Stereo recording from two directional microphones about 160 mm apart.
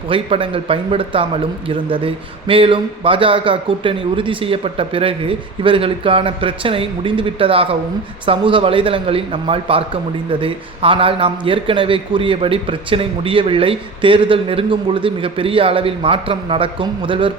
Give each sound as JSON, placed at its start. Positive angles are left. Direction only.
{"t": 0.1, "sound": "speech", "side_deg": -35}